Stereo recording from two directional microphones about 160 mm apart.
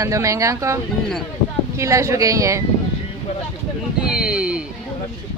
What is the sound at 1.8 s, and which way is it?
Speech, 20° right (ahead or behind).